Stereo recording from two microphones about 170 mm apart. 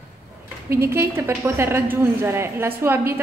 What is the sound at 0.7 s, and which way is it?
A woman's voice, 15° right (ahead or behind).